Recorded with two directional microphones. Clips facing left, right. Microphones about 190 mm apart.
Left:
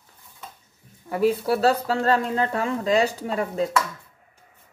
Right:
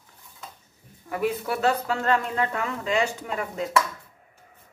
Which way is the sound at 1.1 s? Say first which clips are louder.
Left 5 dB; 30° left (ahead or behind).